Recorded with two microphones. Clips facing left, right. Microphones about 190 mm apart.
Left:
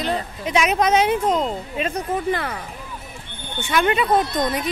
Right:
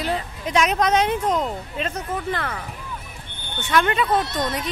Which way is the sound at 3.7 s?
10° left (ahead or behind).